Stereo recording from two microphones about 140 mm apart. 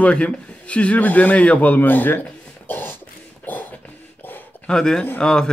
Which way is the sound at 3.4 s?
10° left (ahead or behind).